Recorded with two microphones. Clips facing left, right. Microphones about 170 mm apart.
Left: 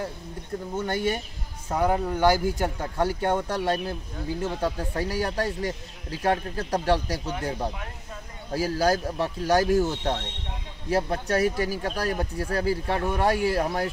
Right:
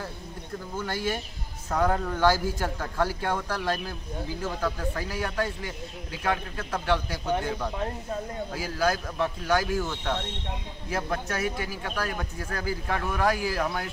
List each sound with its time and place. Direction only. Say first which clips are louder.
0.7 s speech: left 3 dB; 25° left (ahead or behind)
1.7 s speech: left 2 dB; 10° left (ahead or behind); by 13.8 s 30° left (ahead or behind)